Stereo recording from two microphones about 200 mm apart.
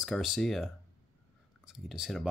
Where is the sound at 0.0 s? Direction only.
Centre (ahead or behind).